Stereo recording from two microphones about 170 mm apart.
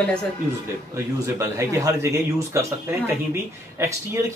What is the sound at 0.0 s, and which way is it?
Speech, 5° left (ahead or behind).